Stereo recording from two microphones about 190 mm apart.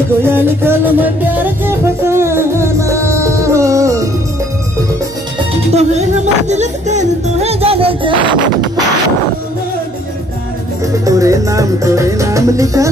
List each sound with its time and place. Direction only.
0.2 s music: 10° right (ahead or behind)
5.7 s music: 35° right (ahead or behind)
11.1 s music: 15° right (ahead or behind)